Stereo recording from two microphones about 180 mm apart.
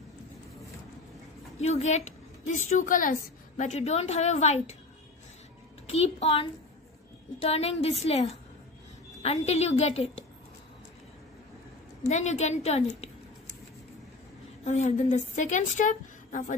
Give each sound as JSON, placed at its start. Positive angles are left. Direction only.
{"t": 1.6, "sound": "a woman's voice", "side_deg": 40}
{"t": 5.9, "sound": "a woman's voice", "side_deg": 35}
{"t": 12.1, "sound": "a woman's voice", "side_deg": 40}
{"t": 14.6, "sound": "a woman's voice", "side_deg": 40}